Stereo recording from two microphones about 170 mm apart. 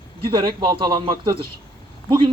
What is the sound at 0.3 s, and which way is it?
Speech, 30° right (ahead or behind).